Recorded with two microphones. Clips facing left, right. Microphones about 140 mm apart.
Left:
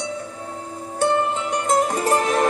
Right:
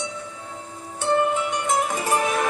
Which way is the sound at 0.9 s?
35° left (ahead or behind).